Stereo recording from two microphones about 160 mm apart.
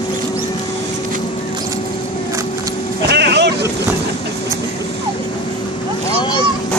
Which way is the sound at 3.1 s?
90° right.